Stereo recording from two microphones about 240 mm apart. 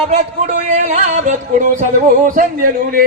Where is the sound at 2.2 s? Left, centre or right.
Right.